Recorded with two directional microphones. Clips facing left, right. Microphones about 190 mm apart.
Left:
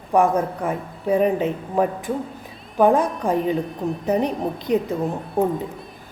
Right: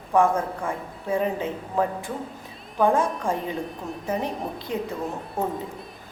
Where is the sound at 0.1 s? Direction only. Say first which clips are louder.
Left 3 dB; 15° left (ahead or behind).